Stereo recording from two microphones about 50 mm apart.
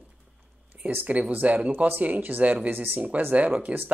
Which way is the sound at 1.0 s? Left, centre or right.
Right.